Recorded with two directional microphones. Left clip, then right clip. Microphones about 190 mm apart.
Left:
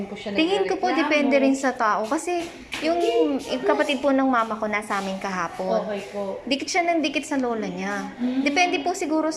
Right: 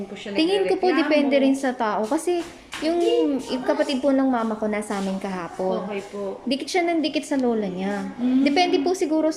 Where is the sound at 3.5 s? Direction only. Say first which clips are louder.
Left 1 dB; 30° right (ahead or behind).